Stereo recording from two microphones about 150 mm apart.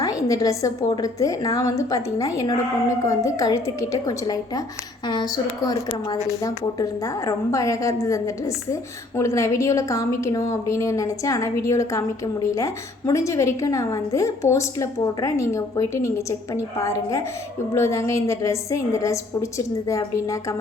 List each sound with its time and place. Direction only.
0.0 s a woman's voice: 20° left (ahead or behind)